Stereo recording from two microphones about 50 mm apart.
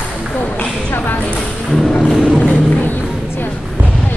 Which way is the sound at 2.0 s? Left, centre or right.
Centre.